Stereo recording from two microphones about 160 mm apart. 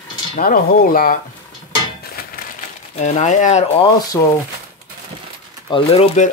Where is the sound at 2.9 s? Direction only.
45° left (ahead or behind).